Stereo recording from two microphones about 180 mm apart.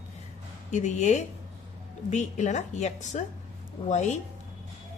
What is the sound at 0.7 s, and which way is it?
A woman's voice, 40° left (ahead or behind).